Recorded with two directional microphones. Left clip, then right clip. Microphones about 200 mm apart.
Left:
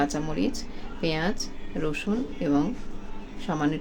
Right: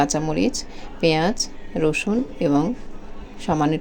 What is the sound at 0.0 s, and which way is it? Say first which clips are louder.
Speech: right 6 dB; 25° right (ahead or behind).